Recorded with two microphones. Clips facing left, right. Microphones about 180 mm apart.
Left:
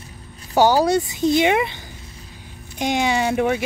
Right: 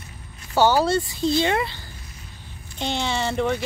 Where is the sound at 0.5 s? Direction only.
15° left (ahead or behind).